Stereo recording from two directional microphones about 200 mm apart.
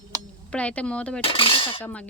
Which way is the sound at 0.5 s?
5° left (ahead or behind).